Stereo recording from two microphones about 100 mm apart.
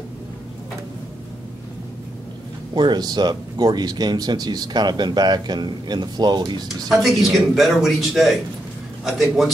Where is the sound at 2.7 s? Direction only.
45° right (ahead or behind).